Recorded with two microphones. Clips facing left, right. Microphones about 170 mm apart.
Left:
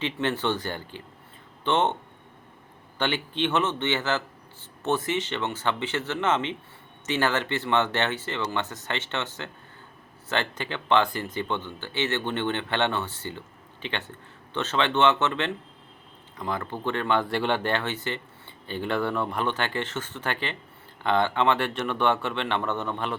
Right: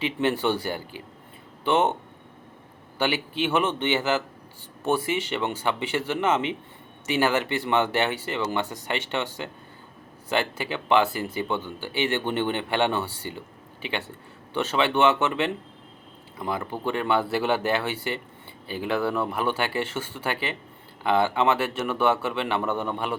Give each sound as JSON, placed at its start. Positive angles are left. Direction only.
{"t": 0.0, "sound": "speech", "side_deg": -10}
{"t": 3.0, "sound": "speech", "side_deg": -10}